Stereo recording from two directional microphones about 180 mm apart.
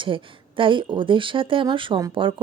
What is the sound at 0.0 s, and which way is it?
Speech, 30° right (ahead or behind).